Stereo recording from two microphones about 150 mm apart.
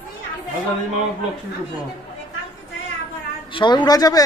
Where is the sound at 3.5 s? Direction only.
30° left (ahead or behind).